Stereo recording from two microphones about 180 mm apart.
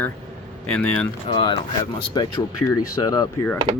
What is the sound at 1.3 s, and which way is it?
Speech, 30° left (ahead or behind).